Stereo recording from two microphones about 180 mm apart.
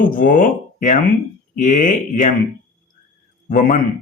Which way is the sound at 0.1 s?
50° left (ahead or behind).